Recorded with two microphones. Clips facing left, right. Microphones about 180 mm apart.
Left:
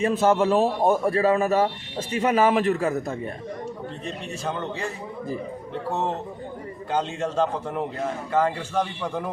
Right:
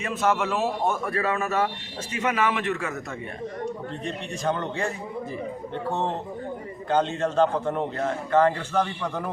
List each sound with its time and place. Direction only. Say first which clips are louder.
0.0 s a man's voice: left 5 dB; 30° left (ahead or behind)
6.9 s a man's voice: right 2 dB; 10° left (ahead or behind)